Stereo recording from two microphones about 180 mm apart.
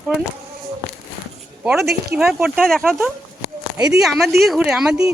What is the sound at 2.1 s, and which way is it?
Speech, 5° right (ahead or behind).